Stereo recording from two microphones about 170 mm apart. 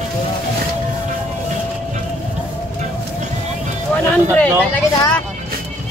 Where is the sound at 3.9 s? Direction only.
5° left (ahead or behind).